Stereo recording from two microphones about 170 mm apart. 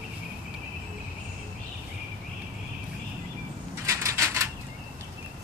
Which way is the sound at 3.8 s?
15° right (ahead or behind).